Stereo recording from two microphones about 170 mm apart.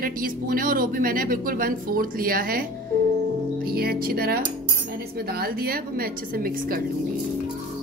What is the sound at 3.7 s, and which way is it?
A woman's voice, 60° right (ahead or behind).